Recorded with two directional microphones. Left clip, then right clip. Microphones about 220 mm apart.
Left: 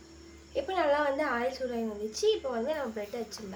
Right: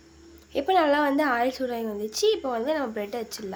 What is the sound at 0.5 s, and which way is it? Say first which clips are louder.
A woman's voice: right 6 dB; 50° right (ahead or behind).